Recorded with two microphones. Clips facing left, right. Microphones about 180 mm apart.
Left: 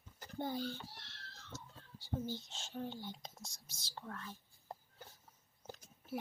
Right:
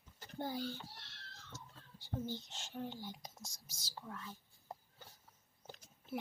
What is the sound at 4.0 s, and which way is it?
Whispering, 5° right (ahead or behind).